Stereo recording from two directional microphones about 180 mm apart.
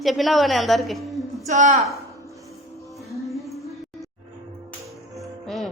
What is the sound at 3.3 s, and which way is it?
Music, centre (ahead or behind).